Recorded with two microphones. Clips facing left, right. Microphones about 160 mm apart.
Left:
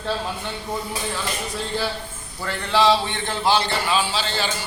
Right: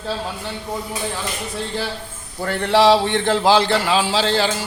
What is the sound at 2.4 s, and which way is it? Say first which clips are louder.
A man's voice: right 4 dB; 55° right (ahead or behind).